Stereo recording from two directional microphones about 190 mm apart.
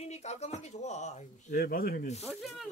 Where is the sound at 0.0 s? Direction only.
35° left (ahead or behind).